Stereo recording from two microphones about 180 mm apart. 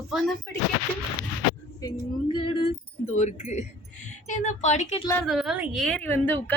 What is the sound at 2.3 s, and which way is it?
Music, 30° left (ahead or behind).